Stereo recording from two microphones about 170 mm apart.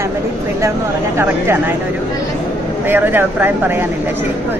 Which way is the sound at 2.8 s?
10° right (ahead or behind).